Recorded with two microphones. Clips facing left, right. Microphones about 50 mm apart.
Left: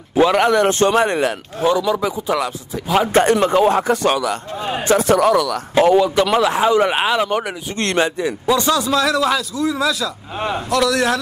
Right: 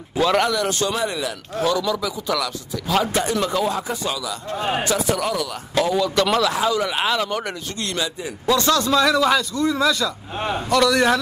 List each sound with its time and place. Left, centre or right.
0.5 s speech: left
1.6 s speech: left
3.1 s speech: left
3.9 s a man's voice: left
4.6 s speech: centre
4.8 s speech: left
5.9 s speech: left
7.8 s a man's voice: left
8.5 s a man's voice: centre